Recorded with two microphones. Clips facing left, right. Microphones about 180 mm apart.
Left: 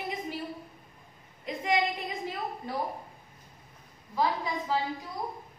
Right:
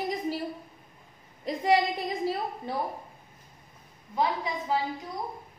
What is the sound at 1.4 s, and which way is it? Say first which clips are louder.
Speech: right 4 dB; 35° right (ahead or behind).